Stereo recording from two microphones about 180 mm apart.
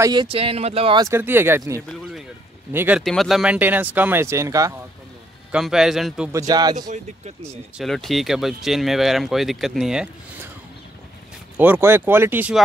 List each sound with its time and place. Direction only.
0.0 s speech: 25° right (ahead or behind)
1.0 s speech: 15° right (ahead or behind)
1.9 s speech: centre (ahead or behind)
2.7 s speech: 10° right (ahead or behind)
3.0 s speech: centre (ahead or behind); by 4.7 s 20° right (ahead or behind)
5.5 s speech: 5° right (ahead or behind)
6.3 s speech: 20° right (ahead or behind)
7.8 s speech: centre (ahead or behind)
11.5 s speech: 10° right (ahead or behind)